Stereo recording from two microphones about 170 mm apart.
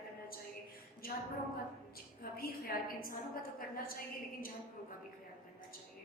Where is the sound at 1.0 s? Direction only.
60° left (ahead or behind).